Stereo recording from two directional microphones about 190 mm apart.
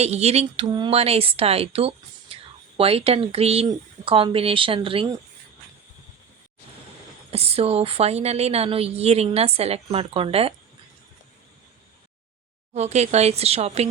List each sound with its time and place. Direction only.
0.0 s speech: 35° right (ahead or behind)
7.3 s speech: 30° right (ahead or behind)
12.7 s speech: 35° right (ahead or behind)